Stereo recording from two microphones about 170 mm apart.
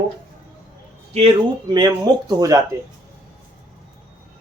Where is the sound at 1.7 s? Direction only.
25° right (ahead or behind).